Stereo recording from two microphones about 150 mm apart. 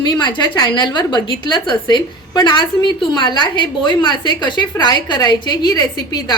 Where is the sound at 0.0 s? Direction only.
30° left (ahead or behind).